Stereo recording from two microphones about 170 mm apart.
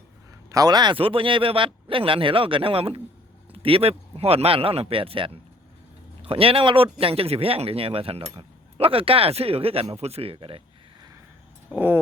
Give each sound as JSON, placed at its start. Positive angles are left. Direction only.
{"t": 0.5, "sound": "speech", "side_deg": -25}
{"t": 11.7, "sound": "speech", "side_deg": -10}